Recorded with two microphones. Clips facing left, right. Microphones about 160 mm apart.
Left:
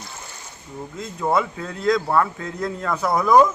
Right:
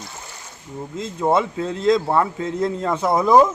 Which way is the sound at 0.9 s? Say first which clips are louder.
Right 3 dB; 25° right (ahead or behind).